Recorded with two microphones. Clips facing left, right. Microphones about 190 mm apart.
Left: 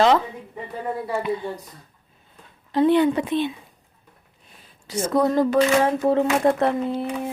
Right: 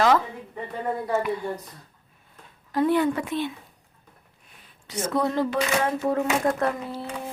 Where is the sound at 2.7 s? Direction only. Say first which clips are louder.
Left 4 dB; 25° left (ahead or behind).